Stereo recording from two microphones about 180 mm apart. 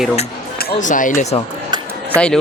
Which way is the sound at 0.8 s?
45° left (ahead or behind).